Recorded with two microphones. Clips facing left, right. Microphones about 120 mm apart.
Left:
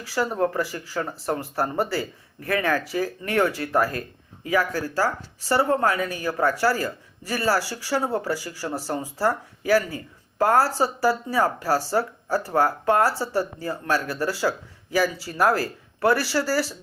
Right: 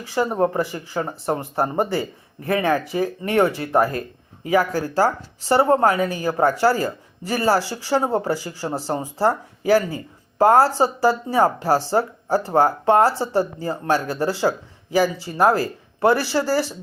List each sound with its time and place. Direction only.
0.0 s speech: 20° right (ahead or behind)